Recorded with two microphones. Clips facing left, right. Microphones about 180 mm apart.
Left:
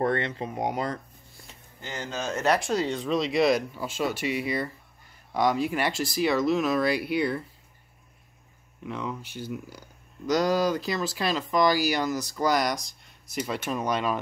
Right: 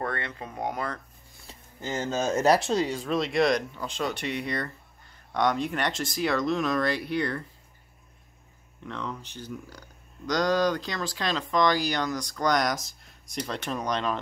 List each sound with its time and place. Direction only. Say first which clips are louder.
0.0 s speech: left 6 dB; 25° left (ahead or behind)
0.7 s speech: left 3 dB; 25° left (ahead or behind)
1.5 s a sound: right 5 dB; 35° right (ahead or behind)
2.0 s speech: right 5 dB; 40° right (ahead or behind)
2.6 s speech: right 1 dB; 25° right (ahead or behind)
2.9 s speech: left 1 dB; centre (ahead or behind)
8.8 s speech: left 2 dB; 10° left (ahead or behind)